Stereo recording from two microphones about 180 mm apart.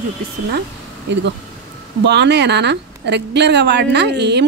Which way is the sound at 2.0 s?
70° right (ahead or behind).